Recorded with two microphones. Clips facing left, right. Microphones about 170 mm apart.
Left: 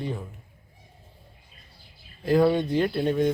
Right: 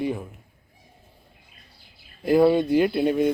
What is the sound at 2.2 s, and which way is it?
Speech, 10° right (ahead or behind).